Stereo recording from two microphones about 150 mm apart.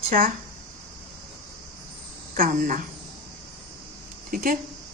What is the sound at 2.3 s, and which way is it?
Speech, 65° right (ahead or behind).